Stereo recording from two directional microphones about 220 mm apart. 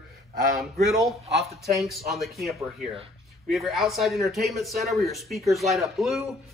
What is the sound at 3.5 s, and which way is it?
Speech, centre (ahead or behind).